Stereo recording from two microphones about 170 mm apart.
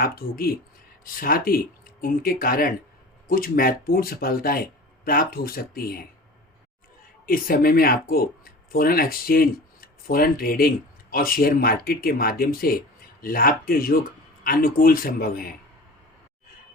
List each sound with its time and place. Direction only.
0.0 s speech: 60° left (ahead or behind)
7.3 s speech: 60° left (ahead or behind)